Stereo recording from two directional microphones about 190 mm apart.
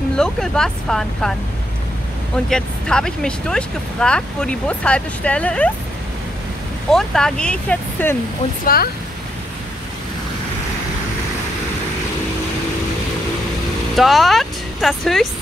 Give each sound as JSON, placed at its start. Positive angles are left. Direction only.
{"t": 0.2, "sound": "speech", "side_deg": 5}
{"t": 2.3, "sound": "speech", "side_deg": 5}
{"t": 6.9, "sound": "speech", "side_deg": 0}
{"t": 8.6, "sound": "speech", "side_deg": 50}
{"t": 13.9, "sound": "speech", "side_deg": 0}